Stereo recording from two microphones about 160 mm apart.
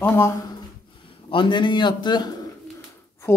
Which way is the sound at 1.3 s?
30° left (ahead or behind).